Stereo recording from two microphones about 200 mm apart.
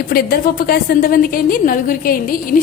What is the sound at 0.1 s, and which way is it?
A woman's voice, 50° left (ahead or behind).